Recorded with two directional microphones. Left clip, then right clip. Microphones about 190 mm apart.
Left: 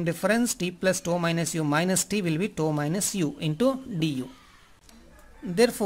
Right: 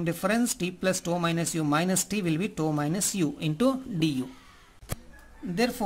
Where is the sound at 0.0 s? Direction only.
15° left (ahead or behind).